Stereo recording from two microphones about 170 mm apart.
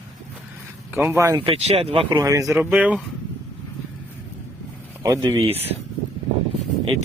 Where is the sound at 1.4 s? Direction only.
35° right (ahead or behind).